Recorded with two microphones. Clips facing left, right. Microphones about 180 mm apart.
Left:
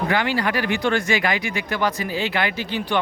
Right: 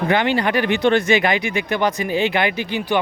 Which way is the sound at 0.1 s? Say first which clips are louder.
Right 6 dB; 20° right (ahead or behind).